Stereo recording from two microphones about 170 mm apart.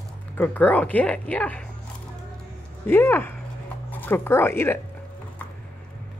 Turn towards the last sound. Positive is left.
turn(degrees=15)  # may be behind; listen again after turning